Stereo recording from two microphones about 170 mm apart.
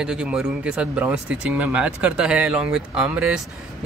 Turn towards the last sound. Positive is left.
turn(degrees=-5)  # may be behind; listen again after turning